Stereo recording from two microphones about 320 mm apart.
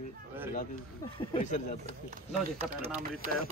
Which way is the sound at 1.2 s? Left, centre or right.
Centre.